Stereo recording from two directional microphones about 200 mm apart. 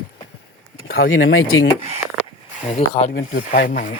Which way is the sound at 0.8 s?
45° left (ahead or behind).